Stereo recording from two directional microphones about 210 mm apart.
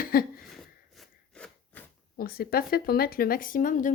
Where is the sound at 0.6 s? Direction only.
Centre (ahead or behind).